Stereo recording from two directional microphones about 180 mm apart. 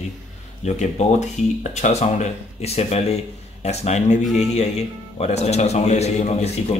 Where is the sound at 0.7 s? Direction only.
40° left (ahead or behind).